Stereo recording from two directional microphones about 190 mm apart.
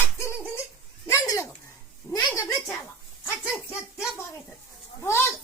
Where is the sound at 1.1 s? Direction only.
15° left (ahead or behind).